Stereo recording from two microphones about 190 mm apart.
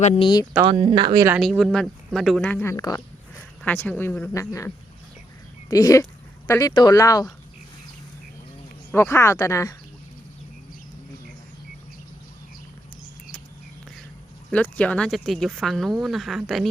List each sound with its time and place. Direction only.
0.0 s speech: 25° left (ahead or behind)
0.6 s speech: 30° right (ahead or behind)
1.4 s speech: centre (ahead or behind); by 7.3 s 20° left (ahead or behind)
8.9 s speech: 10° left (ahead or behind)
14.5 s speech: 5° left (ahead or behind)